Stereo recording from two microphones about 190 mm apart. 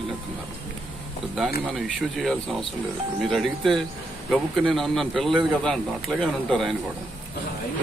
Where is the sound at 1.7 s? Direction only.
Centre (ahead or behind).